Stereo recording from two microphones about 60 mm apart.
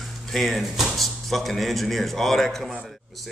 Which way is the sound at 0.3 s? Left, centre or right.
Centre.